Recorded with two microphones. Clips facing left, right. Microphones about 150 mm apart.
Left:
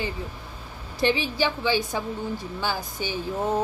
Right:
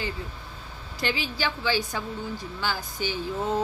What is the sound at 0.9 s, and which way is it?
A woman's voice, 20° left (ahead or behind).